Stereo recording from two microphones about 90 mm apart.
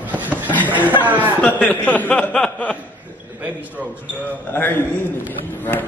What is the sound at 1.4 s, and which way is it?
Speech, 15° left (ahead or behind).